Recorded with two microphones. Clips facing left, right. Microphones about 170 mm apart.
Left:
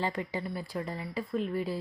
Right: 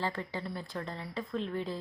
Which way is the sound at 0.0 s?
15° left (ahead or behind).